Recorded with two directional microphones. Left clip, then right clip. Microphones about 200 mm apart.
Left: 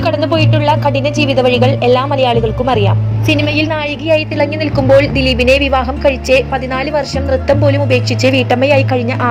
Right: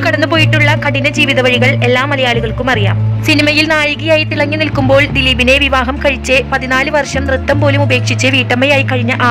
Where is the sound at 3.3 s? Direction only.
Centre (ahead or behind).